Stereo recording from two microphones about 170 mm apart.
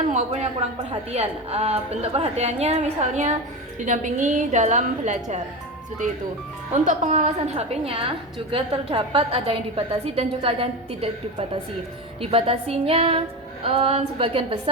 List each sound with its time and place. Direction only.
0.1 s a woman's voice: 40° right (ahead or behind)
6.8 s a woman's voice: 45° right (ahead or behind)